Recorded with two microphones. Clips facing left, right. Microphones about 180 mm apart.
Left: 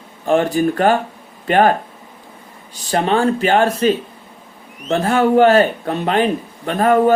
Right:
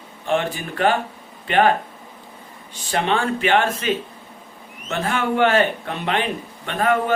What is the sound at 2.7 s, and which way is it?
Speech, 40° left (ahead or behind).